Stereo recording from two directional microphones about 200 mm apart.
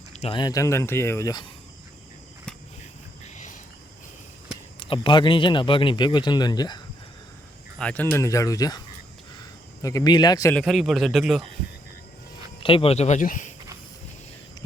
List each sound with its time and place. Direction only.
0.1 s speech: 30° left (ahead or behind)
3.2 s cricket: 40° left (ahead or behind)
4.8 s speech: 25° left (ahead or behind)
7.8 s a man's voice: 5° left (ahead or behind)
10.5 s a man's voice: centre (ahead or behind)
12.5 s speech: 25° left (ahead or behind)